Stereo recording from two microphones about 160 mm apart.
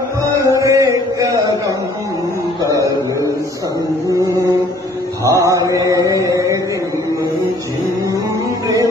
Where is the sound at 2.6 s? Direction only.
20° right (ahead or behind).